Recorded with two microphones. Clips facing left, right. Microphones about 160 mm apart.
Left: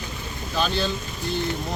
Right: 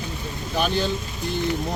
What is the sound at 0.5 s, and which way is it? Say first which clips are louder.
Speech: right 1 dB; 15° right (ahead or behind).